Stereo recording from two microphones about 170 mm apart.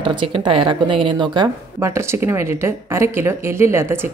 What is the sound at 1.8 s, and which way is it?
Speech, 15° right (ahead or behind).